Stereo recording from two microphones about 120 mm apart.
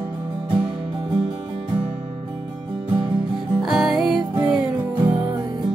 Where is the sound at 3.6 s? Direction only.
5° right (ahead or behind).